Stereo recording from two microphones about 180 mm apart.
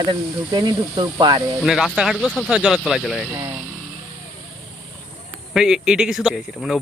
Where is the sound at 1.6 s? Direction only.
Centre (ahead or behind).